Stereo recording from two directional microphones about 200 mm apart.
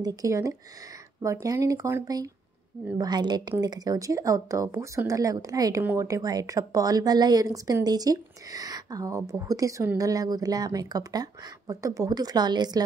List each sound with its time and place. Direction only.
0.0 s speech: 15° right (ahead or behind)